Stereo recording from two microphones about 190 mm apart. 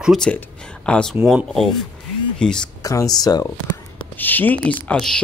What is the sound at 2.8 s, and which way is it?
Speech, 15° left (ahead or behind).